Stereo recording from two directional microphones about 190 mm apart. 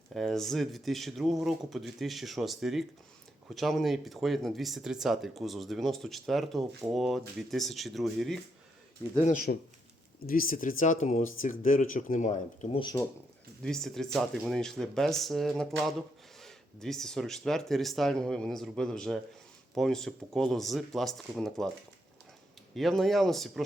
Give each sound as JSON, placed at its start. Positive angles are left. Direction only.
{"t": 0.1, "sound": "speech", "side_deg": 0}
{"t": 9.2, "sound": "speech", "side_deg": 45}
{"t": 12.8, "sound": "speech", "side_deg": 20}
{"t": 13.6, "sound": "speech", "side_deg": 5}
{"t": 22.7, "sound": "speech", "side_deg": 0}